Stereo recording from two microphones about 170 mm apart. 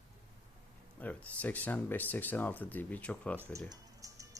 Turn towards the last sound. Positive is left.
turn(degrees=-20)  # may be behind; listen again after turning